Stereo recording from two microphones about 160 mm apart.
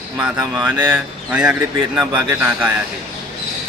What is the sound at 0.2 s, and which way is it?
Speech, 5° right (ahead or behind).